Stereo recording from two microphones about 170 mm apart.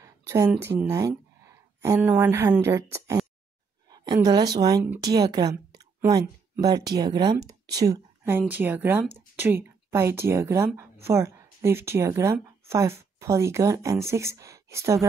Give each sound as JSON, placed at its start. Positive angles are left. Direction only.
{"t": 0.0, "sound": "gasp", "side_deg": -20}
{"t": 2.0, "sound": "a woman's voice", "side_deg": -10}